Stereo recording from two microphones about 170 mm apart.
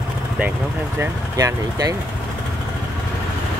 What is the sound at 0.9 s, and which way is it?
Speech, 20° right (ahead or behind).